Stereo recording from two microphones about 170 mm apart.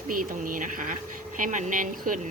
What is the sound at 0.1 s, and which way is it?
Speech, 50° right (ahead or behind).